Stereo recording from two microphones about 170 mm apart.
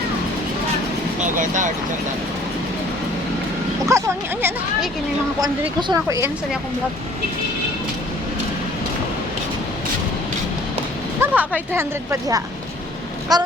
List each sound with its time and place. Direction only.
1.4 s speech: 50° right (ahead or behind)
3.8 s speech: 15° right (ahead or behind)
5.9 s speech: 20° right (ahead or behind)
11.2 s speech: 10° right (ahead or behind)